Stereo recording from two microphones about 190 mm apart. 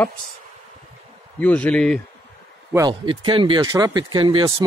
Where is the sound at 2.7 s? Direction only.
25° right (ahead or behind).